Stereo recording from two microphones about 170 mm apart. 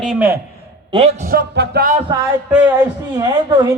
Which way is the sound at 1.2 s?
60° right (ahead or behind).